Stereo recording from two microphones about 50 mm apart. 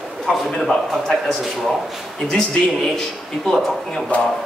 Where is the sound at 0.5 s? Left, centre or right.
Centre.